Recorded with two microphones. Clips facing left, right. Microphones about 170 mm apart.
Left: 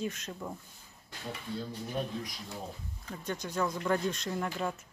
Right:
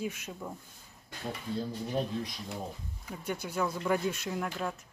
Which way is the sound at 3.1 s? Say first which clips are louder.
Right 1 dB; 10° right (ahead or behind).